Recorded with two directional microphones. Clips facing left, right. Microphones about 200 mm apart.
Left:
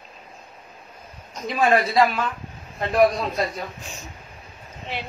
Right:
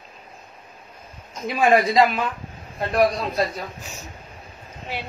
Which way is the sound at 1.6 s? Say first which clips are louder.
Right 2 dB; 15° right (ahead or behind).